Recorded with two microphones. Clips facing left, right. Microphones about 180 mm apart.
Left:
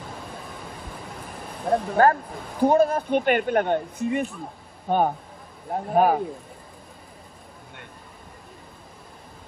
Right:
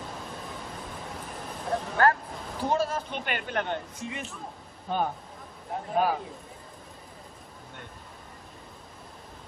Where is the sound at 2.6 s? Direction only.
55° left (ahead or behind).